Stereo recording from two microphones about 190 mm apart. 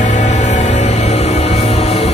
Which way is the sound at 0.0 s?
40° left (ahead or behind).